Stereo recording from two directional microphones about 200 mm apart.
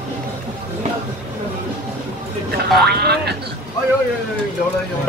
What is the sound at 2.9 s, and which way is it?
Boing, 55° right (ahead or behind).